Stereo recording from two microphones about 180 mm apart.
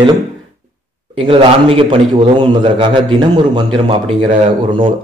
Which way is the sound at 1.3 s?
30° right (ahead or behind).